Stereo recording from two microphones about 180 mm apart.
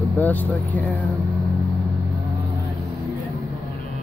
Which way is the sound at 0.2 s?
10° left (ahead or behind).